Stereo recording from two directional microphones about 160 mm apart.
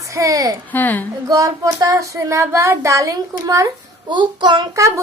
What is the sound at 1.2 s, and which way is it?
Child singing, 20° right (ahead or behind).